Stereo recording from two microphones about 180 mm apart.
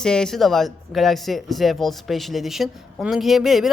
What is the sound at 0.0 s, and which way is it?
Speech, 5° left (ahead or behind).